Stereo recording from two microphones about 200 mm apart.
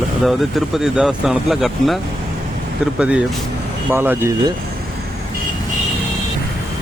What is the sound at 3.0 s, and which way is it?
Speech, 5° right (ahead or behind).